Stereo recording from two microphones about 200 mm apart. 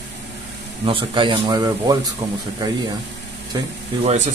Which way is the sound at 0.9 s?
25° right (ahead or behind).